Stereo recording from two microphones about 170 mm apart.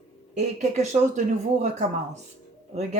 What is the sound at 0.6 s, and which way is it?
A woman's voice, 45° right (ahead or behind).